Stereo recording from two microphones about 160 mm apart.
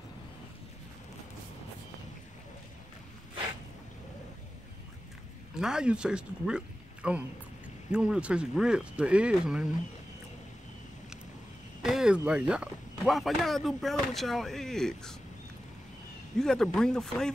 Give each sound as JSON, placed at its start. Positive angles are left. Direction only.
{"t": 5.6, "sound": "speech", "side_deg": -5}
{"t": 11.8, "sound": "speech", "side_deg": -5}
{"t": 16.3, "sound": "speech", "side_deg": 5}